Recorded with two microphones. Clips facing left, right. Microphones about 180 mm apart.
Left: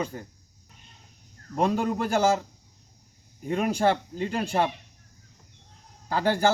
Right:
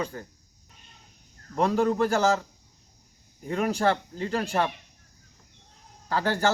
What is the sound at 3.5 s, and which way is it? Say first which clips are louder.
Speech: left 1 dB; 15° left (ahead or behind).